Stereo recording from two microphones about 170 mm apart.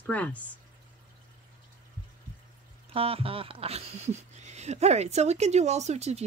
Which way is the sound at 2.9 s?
35° right (ahead or behind).